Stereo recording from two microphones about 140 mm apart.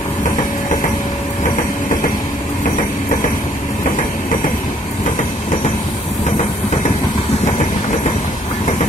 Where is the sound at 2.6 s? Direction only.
70° left (ahead or behind).